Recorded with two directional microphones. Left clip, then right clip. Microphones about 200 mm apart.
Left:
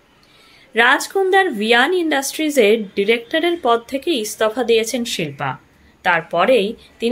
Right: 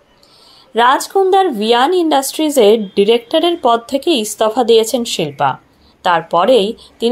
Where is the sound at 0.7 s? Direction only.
10° right (ahead or behind).